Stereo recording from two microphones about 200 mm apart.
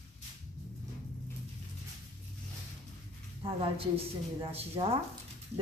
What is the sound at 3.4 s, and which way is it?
Speech, 30° right (ahead or behind).